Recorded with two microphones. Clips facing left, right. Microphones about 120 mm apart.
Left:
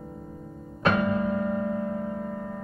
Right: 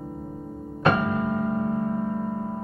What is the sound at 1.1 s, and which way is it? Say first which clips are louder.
Music: right 1 dB; 40° right (ahead or behind).